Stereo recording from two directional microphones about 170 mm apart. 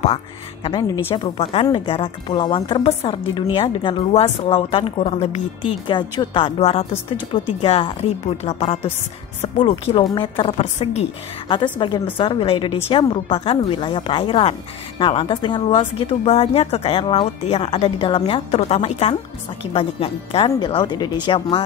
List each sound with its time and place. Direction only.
0.7 s a woman's voice: 25° left (ahead or behind)
3.3 s a woman's voice: 25° left (ahead or behind)
5.9 s a woman's voice: 30° left (ahead or behind)
10.1 s a woman's voice: 30° left (ahead or behind)
11.5 s a woman's voice: 30° left (ahead or behind)